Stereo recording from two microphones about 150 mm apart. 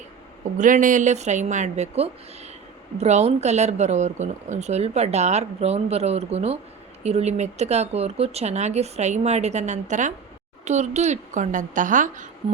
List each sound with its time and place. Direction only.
0.6 s a woman's voice: 60° right (ahead or behind)